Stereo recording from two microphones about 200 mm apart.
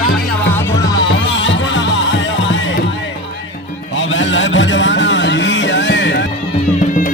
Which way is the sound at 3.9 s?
70° left (ahead or behind).